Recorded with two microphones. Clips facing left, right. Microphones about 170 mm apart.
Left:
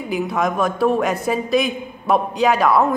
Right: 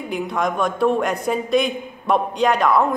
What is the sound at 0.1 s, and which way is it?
A man's voice, 5° left (ahead or behind).